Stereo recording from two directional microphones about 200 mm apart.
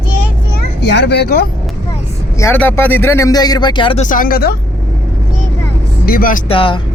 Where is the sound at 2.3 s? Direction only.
10° left (ahead or behind).